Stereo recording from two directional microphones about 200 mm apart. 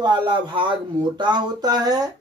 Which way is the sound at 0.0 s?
25° right (ahead or behind).